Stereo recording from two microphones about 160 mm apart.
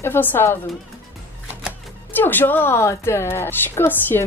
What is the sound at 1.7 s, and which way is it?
A woman's voice, 10° left (ahead or behind).